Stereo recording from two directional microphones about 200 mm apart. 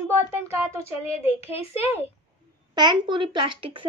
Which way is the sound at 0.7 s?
30° left (ahead or behind).